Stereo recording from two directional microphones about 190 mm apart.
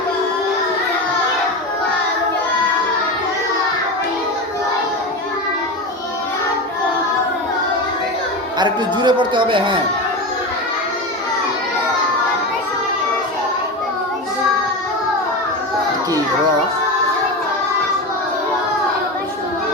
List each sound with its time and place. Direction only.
8.5 s speech: 25° right (ahead or behind)